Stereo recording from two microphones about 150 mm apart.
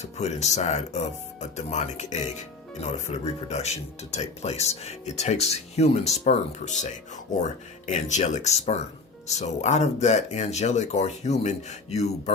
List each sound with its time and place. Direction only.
0.0 s speech: 50° left (ahead or behind)